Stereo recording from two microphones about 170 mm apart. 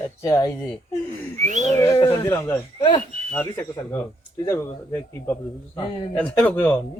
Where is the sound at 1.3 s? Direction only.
45° right (ahead or behind).